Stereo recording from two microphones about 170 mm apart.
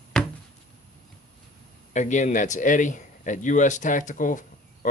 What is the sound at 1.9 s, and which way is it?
A man's voice, 45° left (ahead or behind).